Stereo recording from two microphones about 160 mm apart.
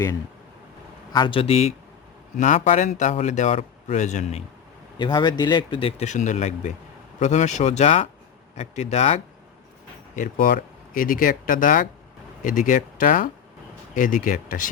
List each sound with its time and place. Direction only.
1.1 s speech: 30° left (ahead or behind)
2.3 s speech: 50° left (ahead or behind)
4.9 s speech: 30° left (ahead or behind)
10.2 s speech: 60° left (ahead or behind)